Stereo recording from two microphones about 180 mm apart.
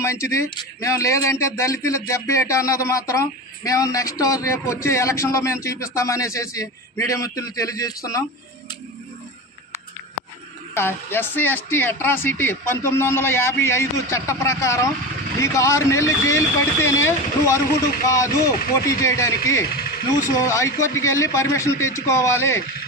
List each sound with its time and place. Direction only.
0.0 s speech: 15° left (ahead or behind)
10.8 s speech: 10° left (ahead or behind)